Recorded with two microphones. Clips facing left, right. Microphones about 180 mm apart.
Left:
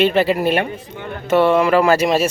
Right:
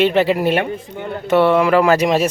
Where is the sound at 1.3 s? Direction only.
15° left (ahead or behind).